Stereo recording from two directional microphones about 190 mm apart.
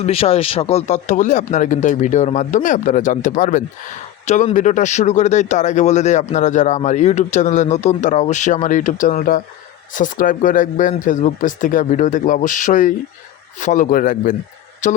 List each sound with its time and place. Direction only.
0.0 s speech: 30° left (ahead or behind)